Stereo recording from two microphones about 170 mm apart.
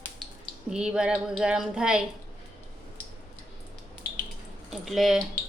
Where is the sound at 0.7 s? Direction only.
5° right (ahead or behind).